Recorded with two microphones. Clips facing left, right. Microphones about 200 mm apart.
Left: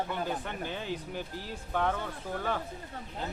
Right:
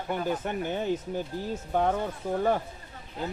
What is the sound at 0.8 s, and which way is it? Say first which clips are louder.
Speech: right 7 dB; 20° right (ahead or behind).